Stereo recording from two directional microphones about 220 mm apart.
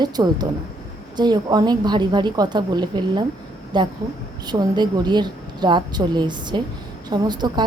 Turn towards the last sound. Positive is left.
turn(degrees=-20)  # may be behind; listen again after turning